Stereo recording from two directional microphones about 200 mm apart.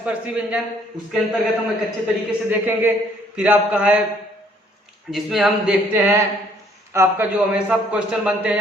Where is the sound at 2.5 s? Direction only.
10° right (ahead or behind).